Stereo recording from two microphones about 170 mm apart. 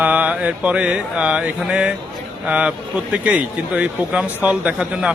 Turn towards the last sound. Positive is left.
turn(degrees=-5)  # may be behind; listen again after turning